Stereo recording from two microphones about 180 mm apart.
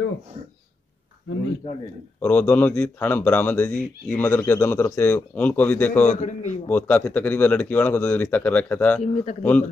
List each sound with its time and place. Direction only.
1.6 s speech: 25° left (ahead or behind)
2.2 s speech: 10° left (ahead or behind)
6.0 s a man's voice: 40° left (ahead or behind)
6.7 s speech: 10° left (ahead or behind)
9.0 s a man's voice: 40° left (ahead or behind)
9.4 s speech: 10° left (ahead or behind)